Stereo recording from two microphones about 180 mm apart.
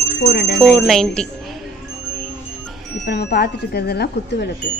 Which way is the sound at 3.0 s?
65° left (ahead or behind).